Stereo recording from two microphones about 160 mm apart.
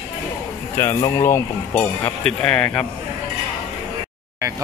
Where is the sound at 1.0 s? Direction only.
20° left (ahead or behind).